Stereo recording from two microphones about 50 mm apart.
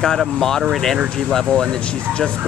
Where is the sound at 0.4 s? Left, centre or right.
Centre.